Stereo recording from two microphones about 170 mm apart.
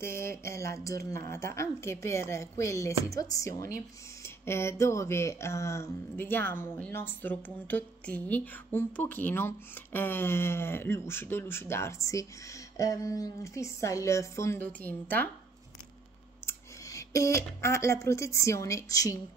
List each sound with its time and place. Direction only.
0.0 s a woman's voice: 15° left (ahead or behind)
16.4 s speech: 20° left (ahead or behind)